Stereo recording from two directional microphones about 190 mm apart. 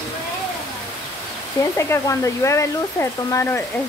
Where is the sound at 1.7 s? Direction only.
15° left (ahead or behind).